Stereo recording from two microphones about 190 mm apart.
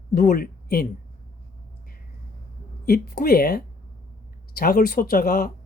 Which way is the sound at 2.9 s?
55° left (ahead or behind).